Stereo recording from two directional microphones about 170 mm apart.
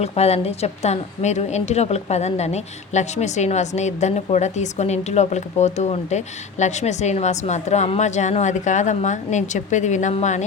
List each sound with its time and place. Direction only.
0.0 s a woman's voice: 40° left (ahead or behind)